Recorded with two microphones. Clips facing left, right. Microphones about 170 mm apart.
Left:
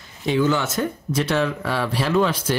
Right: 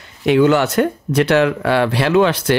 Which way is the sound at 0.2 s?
70° right (ahead or behind).